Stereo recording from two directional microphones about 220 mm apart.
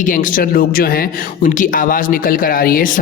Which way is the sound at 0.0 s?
35° left (ahead or behind).